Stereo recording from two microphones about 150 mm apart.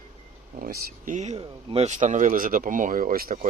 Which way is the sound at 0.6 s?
65° right (ahead or behind).